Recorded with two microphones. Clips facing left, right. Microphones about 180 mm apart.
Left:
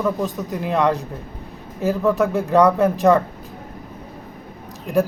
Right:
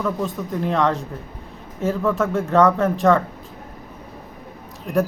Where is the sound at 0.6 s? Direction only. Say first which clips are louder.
Left 1 dB; 5° left (ahead or behind).